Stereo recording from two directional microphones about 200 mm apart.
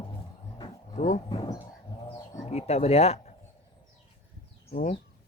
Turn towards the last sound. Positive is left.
turn(degrees=35)  # may be behind; listen again after turning